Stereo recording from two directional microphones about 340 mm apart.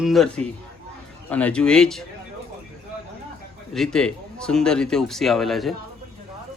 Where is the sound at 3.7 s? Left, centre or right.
Centre.